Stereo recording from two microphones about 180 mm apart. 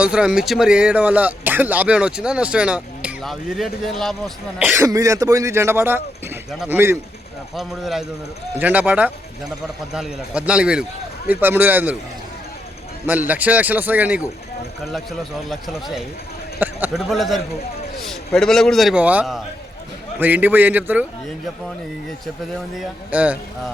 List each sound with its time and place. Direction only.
0.0 s speech: 5° right (ahead or behind)
4.6 s speech: 15° right (ahead or behind)
6.5 s speech: centre (ahead or behind)
13.1 s speech: 10° right (ahead or behind)
15.4 s speech: centre (ahead or behind)
22.8 s speech: 5° right (ahead or behind)